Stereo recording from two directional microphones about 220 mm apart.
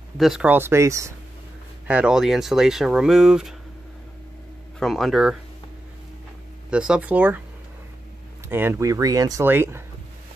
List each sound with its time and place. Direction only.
0.2 s speech: 5° right (ahead or behind)
4.7 s speech: centre (ahead or behind)
6.7 s speech: 5° right (ahead or behind)
8.5 s speech: 10° right (ahead or behind)